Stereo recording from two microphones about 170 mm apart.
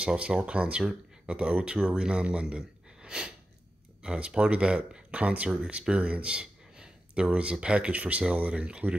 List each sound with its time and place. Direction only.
0.0 s speech: 5° right (ahead or behind)